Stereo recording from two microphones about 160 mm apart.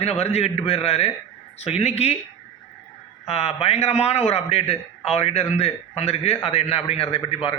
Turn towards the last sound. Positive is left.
turn(degrees=35)  # may be behind; listen again after turning